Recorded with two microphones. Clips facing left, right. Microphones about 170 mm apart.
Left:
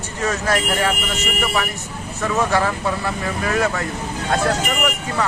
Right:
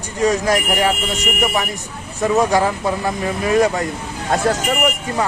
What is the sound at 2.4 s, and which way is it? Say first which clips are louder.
Speech: right 2 dB; 15° right (ahead or behind).